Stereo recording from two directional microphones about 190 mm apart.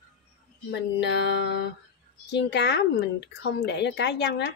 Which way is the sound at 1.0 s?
65° left (ahead or behind).